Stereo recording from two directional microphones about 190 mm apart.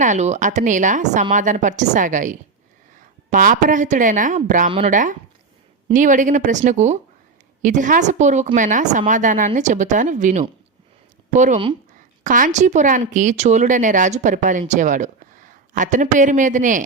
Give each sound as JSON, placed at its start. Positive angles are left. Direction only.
{"t": 0.0, "sound": "a woman's voice", "side_deg": -40}